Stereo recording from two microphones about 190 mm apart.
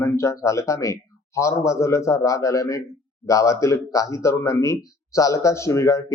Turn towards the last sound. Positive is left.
turn(degrees=15)  # may be behind; listen again after turning